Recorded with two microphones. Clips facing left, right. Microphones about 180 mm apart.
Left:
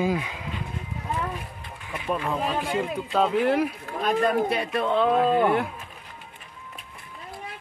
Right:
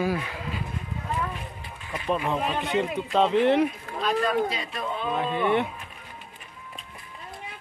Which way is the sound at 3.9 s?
55° left (ahead or behind).